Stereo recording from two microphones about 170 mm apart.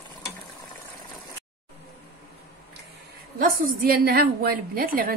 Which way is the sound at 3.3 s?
60° right (ahead or behind).